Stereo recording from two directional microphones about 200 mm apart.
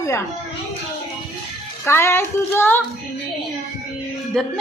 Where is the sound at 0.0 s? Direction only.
15° left (ahead or behind).